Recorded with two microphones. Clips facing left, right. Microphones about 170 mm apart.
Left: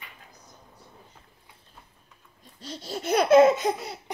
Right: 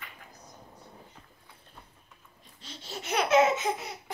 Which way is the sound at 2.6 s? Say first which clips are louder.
Left 9 dB; 40° left (ahead or behind).